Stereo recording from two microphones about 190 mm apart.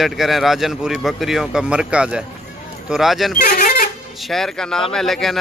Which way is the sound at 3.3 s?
50° left (ahead or behind).